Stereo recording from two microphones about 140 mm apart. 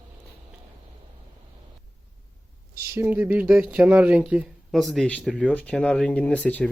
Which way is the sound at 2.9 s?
15° right (ahead or behind).